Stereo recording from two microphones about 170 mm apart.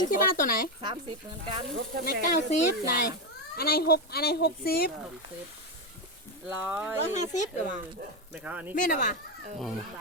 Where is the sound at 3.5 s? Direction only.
65° left (ahead or behind).